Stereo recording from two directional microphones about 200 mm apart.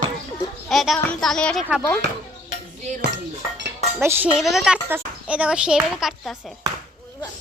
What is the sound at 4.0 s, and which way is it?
A child's voice, 10° right (ahead or behind).